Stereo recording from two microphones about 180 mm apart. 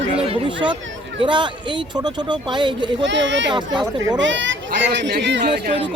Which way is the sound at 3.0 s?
85° right.